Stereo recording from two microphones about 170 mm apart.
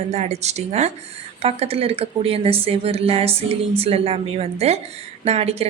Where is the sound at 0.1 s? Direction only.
40° right (ahead or behind).